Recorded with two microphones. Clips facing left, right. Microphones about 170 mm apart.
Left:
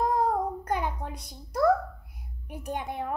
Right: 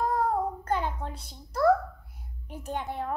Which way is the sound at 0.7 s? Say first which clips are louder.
Even; 15° left (ahead or behind).